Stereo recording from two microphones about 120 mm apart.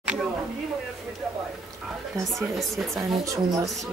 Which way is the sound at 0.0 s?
10° right (ahead or behind).